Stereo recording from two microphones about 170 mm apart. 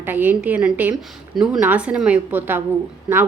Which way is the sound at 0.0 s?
10° right (ahead or behind).